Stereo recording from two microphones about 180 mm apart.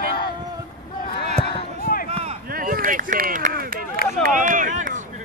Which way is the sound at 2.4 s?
50° right (ahead or behind).